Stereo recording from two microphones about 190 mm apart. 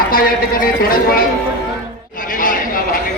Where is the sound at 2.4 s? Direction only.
45° left (ahead or behind).